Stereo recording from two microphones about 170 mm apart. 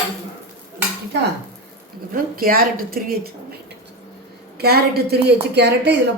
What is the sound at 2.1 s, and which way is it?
Speech, 60° right (ahead or behind).